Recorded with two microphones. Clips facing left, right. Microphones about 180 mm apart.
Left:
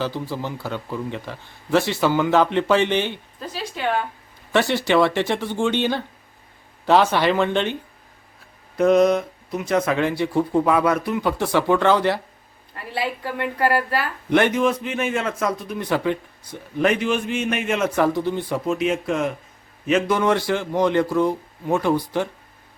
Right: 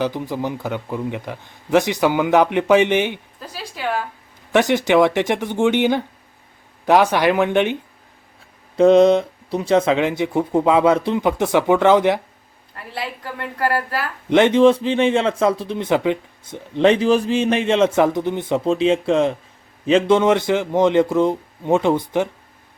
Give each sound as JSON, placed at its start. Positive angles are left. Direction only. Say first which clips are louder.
{"t": 0.0, "sound": "speech", "louder": "right 4 dB", "side_deg": -20}
{"t": 3.5, "sound": "a sound", "louder": "left 1 dB", "side_deg": -5}
{"t": 4.5, "sound": "speech", "louder": "right 3 dB", "side_deg": -15}
{"t": 8.7, "sound": "speech", "louder": "right 4 dB", "side_deg": -25}
{"t": 12.7, "sound": "a woman's voice", "louder": "left 3 dB", "side_deg": 0}
{"t": 14.3, "sound": "speech", "louder": "right 6 dB", "side_deg": -20}